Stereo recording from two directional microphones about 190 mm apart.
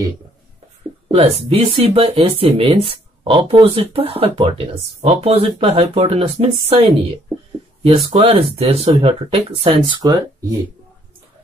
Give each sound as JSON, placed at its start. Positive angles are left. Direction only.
{"t": 1.1, "sound": "speech", "side_deg": -30}